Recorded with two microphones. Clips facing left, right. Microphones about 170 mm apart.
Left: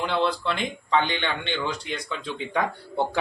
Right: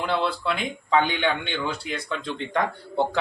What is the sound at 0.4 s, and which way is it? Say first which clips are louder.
Speech: right 1 dB; 5° right (ahead or behind).